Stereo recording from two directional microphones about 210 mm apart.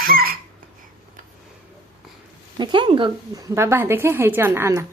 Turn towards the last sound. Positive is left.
turn(degrees=-10)  # may be behind; listen again after turning